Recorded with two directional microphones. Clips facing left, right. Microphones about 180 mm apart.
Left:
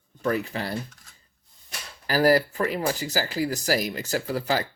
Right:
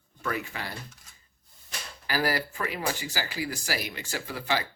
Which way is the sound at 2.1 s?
40° left (ahead or behind).